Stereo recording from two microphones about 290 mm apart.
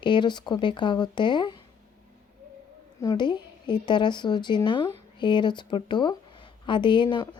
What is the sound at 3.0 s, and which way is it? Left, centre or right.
A woman's voice, centre.